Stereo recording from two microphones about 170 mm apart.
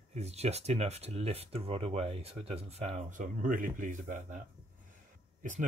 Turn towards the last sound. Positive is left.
turn(degrees=-50)  # may be behind; listen again after turning